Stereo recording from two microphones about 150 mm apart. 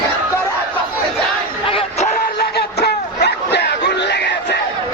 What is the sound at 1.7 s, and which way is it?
Music, 45° left (ahead or behind).